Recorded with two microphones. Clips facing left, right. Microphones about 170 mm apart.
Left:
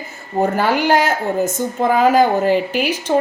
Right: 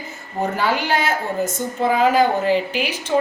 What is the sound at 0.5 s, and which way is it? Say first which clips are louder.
A woman's voice: left 4 dB; 45° left (ahead or behind).